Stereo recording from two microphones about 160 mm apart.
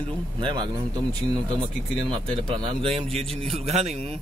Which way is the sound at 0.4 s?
30° right (ahead or behind).